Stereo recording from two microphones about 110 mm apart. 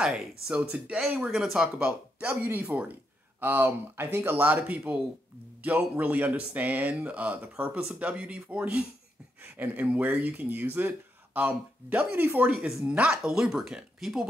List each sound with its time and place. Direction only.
0.0 s speech: 10° right (ahead or behind)
12.5 s speech: 5° right (ahead or behind)